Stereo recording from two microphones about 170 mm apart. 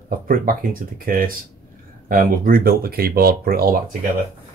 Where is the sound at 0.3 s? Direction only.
55° right (ahead or behind).